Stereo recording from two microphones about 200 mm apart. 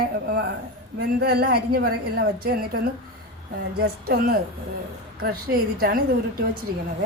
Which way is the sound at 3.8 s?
50° right (ahead or behind).